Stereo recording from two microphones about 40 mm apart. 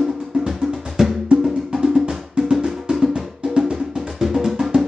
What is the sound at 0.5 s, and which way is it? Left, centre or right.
Music, centre.